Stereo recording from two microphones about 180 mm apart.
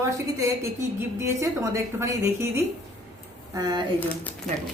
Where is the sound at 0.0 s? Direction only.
15° right (ahead or behind).